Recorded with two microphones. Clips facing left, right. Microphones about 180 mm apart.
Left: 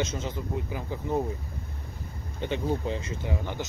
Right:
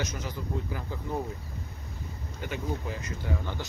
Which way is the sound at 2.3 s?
25° left (ahead or behind).